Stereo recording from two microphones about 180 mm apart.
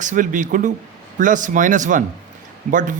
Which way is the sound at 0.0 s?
45° right (ahead or behind).